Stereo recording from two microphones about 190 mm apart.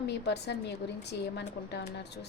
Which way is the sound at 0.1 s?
60° left (ahead or behind).